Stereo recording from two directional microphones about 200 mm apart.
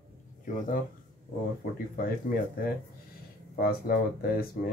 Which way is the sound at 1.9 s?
45° left (ahead or behind).